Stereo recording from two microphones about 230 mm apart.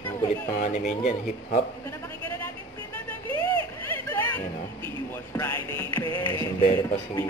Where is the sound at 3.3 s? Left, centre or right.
Right.